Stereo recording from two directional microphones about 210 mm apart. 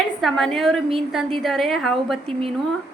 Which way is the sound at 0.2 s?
Centre (ahead or behind).